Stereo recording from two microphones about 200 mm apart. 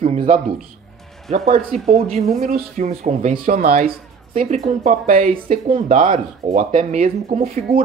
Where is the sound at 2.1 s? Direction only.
35° right (ahead or behind).